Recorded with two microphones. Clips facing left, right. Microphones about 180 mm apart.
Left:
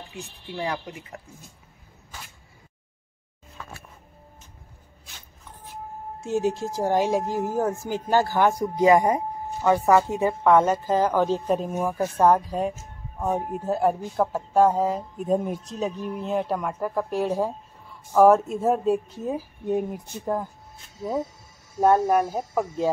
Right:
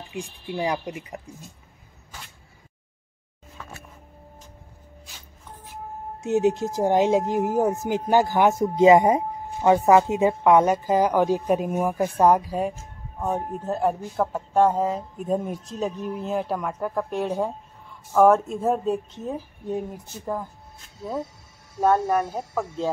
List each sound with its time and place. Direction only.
0.5 s speech: 15° right (ahead or behind)
6.2 s speech: 20° right (ahead or behind)
13.2 s speech: 5° left (ahead or behind)
19.2 s speech: 15° left (ahead or behind)
21.7 s speech: 10° left (ahead or behind)